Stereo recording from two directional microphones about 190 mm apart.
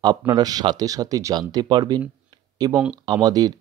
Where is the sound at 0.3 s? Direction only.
20° right (ahead or behind).